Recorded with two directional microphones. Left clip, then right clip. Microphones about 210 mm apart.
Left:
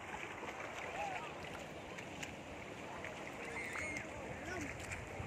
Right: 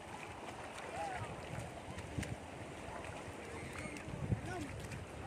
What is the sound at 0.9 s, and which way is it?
Boat, 55° right (ahead or behind).